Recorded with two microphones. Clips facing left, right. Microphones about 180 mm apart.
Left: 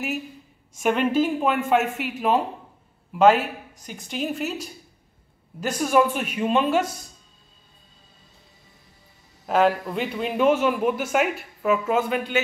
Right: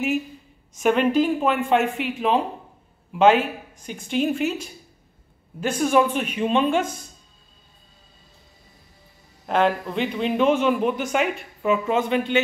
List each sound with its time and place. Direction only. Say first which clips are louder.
0.8 s a man's voice: right 2 dB; 5° left (ahead or behind)
3.3 s speech: right 3 dB; 40° left (ahead or behind)
3.9 s speech: right 6 dB; centre (ahead or behind)
5.7 s speech: right 1 dB; 5° left (ahead or behind)
9.5 s speech: left 1 dB; 5° left (ahead or behind)